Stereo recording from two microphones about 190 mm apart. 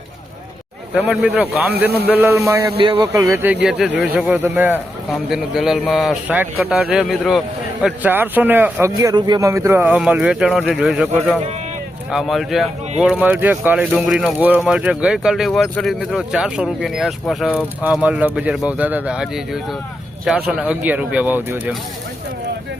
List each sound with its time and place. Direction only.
0.9 s speech: 5° right (ahead or behind)
2.7 s speech: 30° right (ahead or behind)
3.0 s speech: 15° right (ahead or behind)